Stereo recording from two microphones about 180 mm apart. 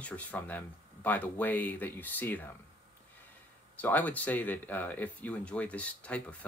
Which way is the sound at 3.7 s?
10° left (ahead or behind).